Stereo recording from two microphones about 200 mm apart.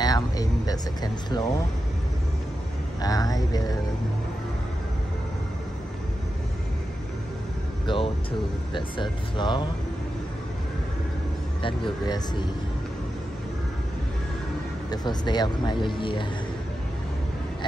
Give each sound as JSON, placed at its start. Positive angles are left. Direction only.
{"t": 0.0, "sound": "speech", "side_deg": 20}
{"t": 3.0, "sound": "speech", "side_deg": 20}
{"t": 7.8, "sound": "speech", "side_deg": 25}
{"t": 11.6, "sound": "speech", "side_deg": 25}
{"t": 14.9, "sound": "speech", "side_deg": 20}